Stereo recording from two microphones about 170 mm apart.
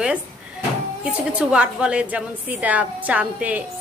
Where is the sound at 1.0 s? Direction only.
5° right (ahead or behind).